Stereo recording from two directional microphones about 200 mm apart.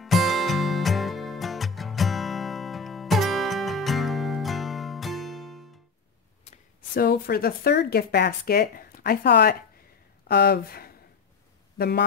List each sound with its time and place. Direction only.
0.0 s music: centre (ahead or behind)
6.9 s speech: 50° left (ahead or behind)